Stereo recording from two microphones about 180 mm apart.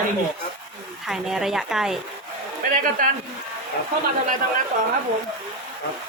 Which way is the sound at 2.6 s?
50° right (ahead or behind).